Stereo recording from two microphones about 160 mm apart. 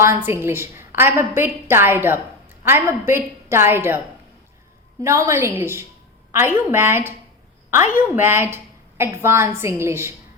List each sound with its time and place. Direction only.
0.0 s a woman's voice: 15° right (ahead or behind)
5.0 s a woman's voice: 20° right (ahead or behind)